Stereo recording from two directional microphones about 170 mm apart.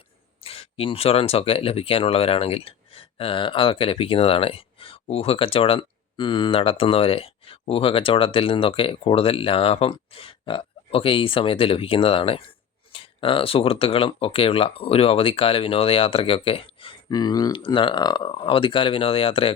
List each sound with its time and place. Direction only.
0.4 s speech: 35° left (ahead or behind)